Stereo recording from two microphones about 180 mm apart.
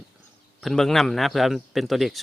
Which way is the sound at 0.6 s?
Centre (ahead or behind).